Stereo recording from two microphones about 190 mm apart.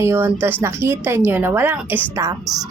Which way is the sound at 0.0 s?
15° right (ahead or behind).